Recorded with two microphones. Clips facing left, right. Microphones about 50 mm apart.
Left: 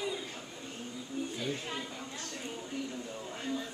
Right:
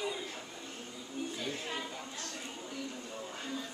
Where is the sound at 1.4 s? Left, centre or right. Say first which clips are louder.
Left 1 dB; centre.